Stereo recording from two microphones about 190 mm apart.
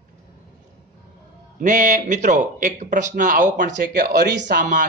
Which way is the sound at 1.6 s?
40° right (ahead or behind).